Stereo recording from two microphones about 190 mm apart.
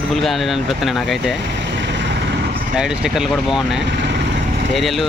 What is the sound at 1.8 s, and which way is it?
Vehicle, 70° right (ahead or behind).